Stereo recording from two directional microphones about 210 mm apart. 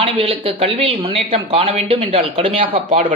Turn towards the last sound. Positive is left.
turn(degrees=-35)  # may be behind; listen again after turning